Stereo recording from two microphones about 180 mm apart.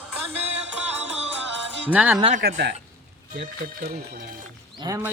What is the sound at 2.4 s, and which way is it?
Speech, 60° right (ahead or behind).